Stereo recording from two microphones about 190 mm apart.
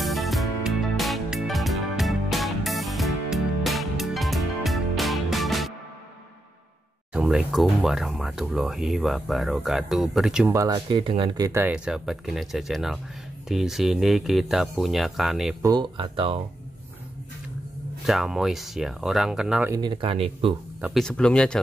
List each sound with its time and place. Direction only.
0.0 s music: centre (ahead or behind)
7.2 s speech: 5° right (ahead or behind)
10.5 s speech: 15° right (ahead or behind)
15.6 s speech: 20° right (ahead or behind)
18.0 s speech: centre (ahead or behind)
19.7 s speech: 25° right (ahead or behind)
20.8 s speech: centre (ahead or behind)